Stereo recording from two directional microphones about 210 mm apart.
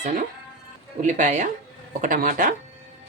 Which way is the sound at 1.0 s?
35° right (ahead or behind).